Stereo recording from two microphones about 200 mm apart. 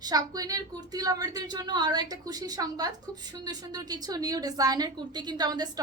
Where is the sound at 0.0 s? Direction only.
20° right (ahead or behind).